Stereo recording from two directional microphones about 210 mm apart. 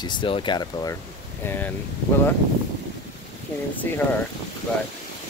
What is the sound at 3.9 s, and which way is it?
Speech, 10° left (ahead or behind).